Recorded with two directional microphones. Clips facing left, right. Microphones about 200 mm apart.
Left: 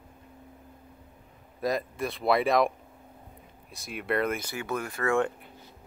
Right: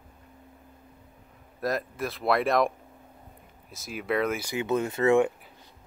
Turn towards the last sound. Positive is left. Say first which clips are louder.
# right 5 dB
turn(degrees=-25)  # may be behind; listen again after turning